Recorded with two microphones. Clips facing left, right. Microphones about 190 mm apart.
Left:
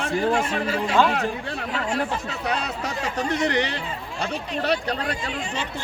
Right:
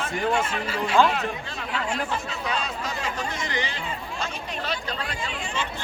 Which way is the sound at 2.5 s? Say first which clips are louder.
Left 3 dB; 65° left (ahead or behind).